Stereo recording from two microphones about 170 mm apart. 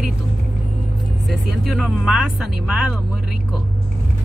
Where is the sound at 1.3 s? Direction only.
Centre (ahead or behind).